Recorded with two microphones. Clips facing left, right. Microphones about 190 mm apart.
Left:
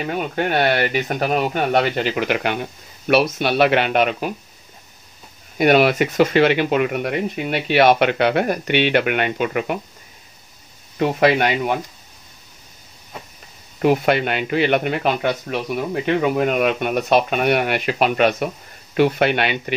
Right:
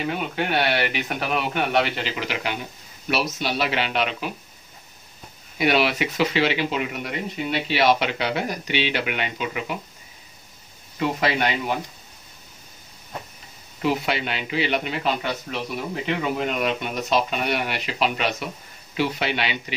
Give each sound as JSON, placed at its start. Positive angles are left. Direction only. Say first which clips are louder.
{"t": 0.0, "sound": "speech", "louder": "left 4 dB", "side_deg": 45}
{"t": 5.6, "sound": "speech", "louder": "left 6 dB", "side_deg": 50}
{"t": 11.0, "sound": "speech", "louder": "left 6 dB", "side_deg": 55}
{"t": 13.7, "sound": "speech", "louder": "left 7 dB", "side_deg": 55}